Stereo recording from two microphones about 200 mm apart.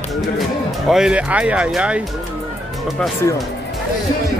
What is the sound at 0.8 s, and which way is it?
Speech, 5° right (ahead or behind).